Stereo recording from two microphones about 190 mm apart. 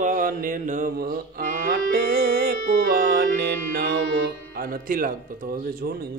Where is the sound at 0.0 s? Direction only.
45° right (ahead or behind).